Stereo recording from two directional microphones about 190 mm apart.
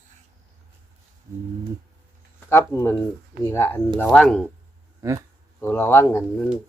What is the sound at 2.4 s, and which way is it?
Speech, 15° left (ahead or behind).